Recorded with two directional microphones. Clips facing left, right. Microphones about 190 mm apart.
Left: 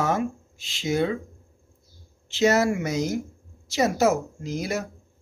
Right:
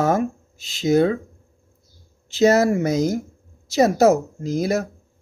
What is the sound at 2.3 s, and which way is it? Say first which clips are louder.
Speech: right 5 dB; 40° right (ahead or behind).